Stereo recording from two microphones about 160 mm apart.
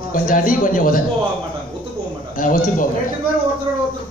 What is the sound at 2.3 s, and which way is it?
Speech, 60° left (ahead or behind).